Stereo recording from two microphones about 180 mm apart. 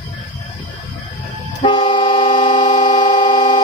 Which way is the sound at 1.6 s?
25° left (ahead or behind).